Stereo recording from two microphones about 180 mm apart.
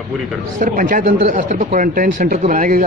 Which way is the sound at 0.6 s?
50° right (ahead or behind).